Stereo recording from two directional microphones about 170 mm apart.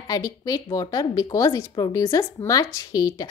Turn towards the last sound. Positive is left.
turn(degrees=20)  # may be behind; listen again after turning